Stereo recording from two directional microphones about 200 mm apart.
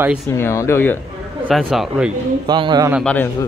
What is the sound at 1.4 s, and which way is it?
Speech, centre (ahead or behind).